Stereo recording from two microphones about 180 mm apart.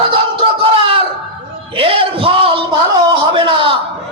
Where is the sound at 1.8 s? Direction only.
30° right (ahead or behind).